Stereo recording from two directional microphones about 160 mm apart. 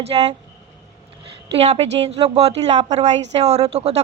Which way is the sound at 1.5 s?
40° right (ahead or behind).